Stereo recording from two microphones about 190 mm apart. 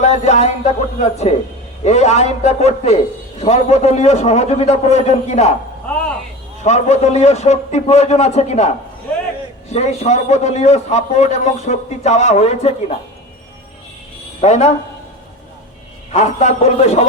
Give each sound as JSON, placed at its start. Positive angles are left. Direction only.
{"t": 0.0, "sound": "a man's voice", "side_deg": 35}
{"t": 6.7, "sound": "a man's voice", "side_deg": 35}
{"t": 9.7, "sound": "a man's voice", "side_deg": 35}
{"t": 14.4, "sound": "a man's voice", "side_deg": 35}
{"t": 16.1, "sound": "a man's voice", "side_deg": 35}